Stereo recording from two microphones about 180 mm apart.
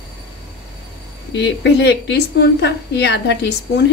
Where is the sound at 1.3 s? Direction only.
75° left (ahead or behind).